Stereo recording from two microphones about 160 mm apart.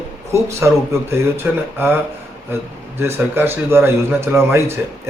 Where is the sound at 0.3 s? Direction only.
15° right (ahead or behind).